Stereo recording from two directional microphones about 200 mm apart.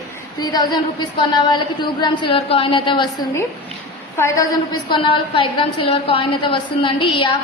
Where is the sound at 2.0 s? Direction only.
25° left (ahead or behind).